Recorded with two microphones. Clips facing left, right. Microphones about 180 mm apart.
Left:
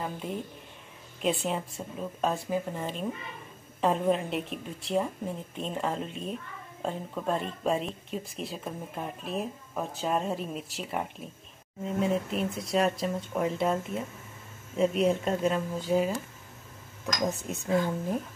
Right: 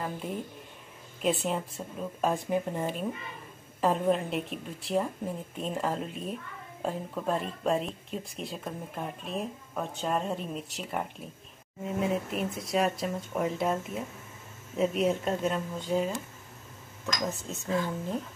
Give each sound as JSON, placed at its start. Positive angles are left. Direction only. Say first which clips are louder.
{"t": 0.0, "sound": "speech", "louder": "even", "side_deg": 0}
{"t": 2.3, "sound": "speech", "louder": "right 2 dB", "side_deg": -15}
{"t": 3.8, "sound": "speech", "louder": "even", "side_deg": 0}